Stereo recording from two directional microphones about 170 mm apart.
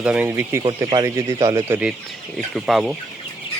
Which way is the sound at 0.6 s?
25° right (ahead or behind).